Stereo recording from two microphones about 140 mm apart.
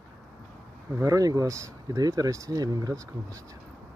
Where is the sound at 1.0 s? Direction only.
25° right (ahead or behind).